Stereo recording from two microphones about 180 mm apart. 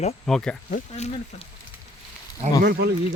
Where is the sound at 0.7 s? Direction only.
40° left (ahead or behind).